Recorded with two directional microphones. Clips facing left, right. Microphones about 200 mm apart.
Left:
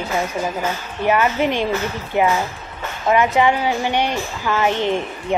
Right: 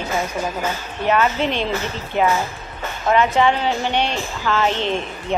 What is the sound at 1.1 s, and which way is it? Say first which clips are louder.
Speech: left 1 dB; 10° left (ahead or behind).